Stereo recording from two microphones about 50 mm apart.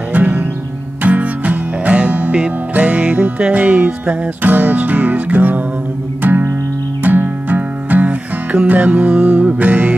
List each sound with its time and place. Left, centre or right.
0.1 s music: right